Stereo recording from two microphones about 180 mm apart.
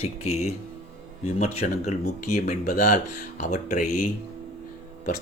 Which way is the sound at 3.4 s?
45° left (ahead or behind).